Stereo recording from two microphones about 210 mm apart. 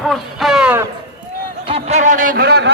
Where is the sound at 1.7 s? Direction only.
30° right (ahead or behind); by 2.7 s 50° right (ahead or behind).